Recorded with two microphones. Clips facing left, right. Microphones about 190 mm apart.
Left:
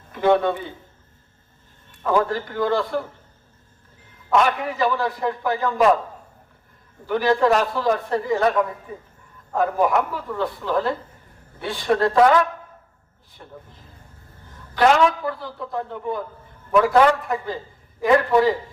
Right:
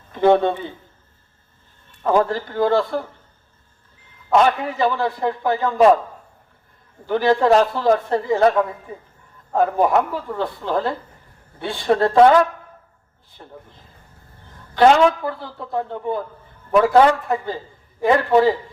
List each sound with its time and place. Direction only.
0.1 s a man's voice: 25° right (ahead or behind)
2.3 s a man's voice: 30° right (ahead or behind)
4.3 s a man's voice: 30° right (ahead or behind)
7.1 s a man's voice: 30° right (ahead or behind)
13.4 s speech: 30° right (ahead or behind)
14.8 s a man's voice: 30° right (ahead or behind)